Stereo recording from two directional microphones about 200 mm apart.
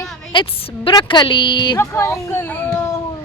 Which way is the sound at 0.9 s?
25° left (ahead or behind).